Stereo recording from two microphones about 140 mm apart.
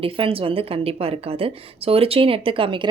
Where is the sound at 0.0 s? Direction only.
40° right (ahead or behind).